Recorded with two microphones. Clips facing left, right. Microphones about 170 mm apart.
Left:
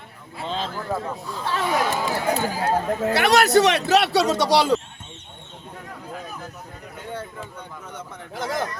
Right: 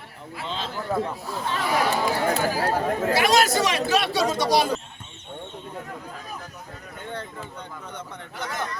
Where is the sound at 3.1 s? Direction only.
65° left (ahead or behind).